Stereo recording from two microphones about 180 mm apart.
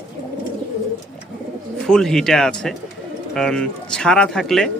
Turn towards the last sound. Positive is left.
turn(degrees=5)  # may be behind; listen again after turning